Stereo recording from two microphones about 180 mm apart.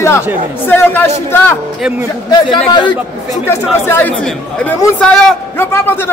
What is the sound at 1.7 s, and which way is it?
Speech, 5° right (ahead or behind).